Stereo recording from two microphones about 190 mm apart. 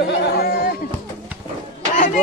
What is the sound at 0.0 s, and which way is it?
Chatter, 50° left (ahead or behind).